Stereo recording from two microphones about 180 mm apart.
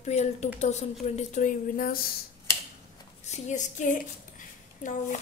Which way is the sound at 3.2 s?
40° left (ahead or behind).